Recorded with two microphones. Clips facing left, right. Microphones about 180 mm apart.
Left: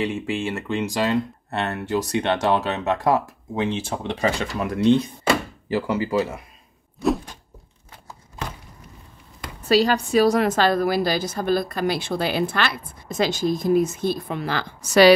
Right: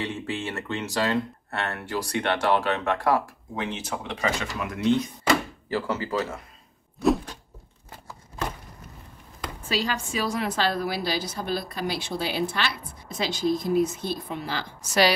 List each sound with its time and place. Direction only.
0.0 s speech: 15° left (ahead or behind); by 5.0 s 30° left (ahead or behind)
5.7 s speech: 15° left (ahead or behind)
9.7 s a woman's voice: 40° left (ahead or behind); by 14.6 s 55° left (ahead or behind)